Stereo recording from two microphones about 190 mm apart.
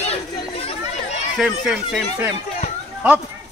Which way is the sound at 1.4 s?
Centre (ahead or behind).